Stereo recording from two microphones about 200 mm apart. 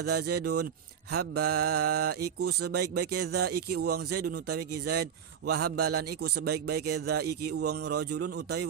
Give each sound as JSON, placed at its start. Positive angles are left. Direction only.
{"t": 0.0, "sound": "speech", "side_deg": -55}